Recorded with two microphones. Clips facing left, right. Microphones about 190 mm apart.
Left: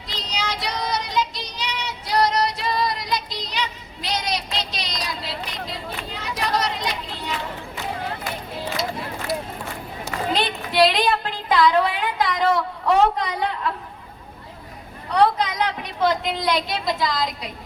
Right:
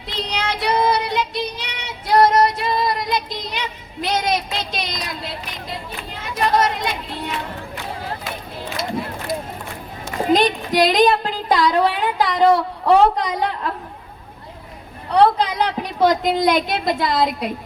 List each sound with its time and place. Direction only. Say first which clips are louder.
0.1 s child singing: right 4 dB; 60° right (ahead or behind)
6.2 s a woman's voice: right 6 dB; 50° right (ahead or behind)
10.3 s speech: right 4 dB; 40° right (ahead or behind)
15.2 s a woman's voice: right 3 dB; 30° right (ahead or behind); by 17.5 s 55° right (ahead or behind)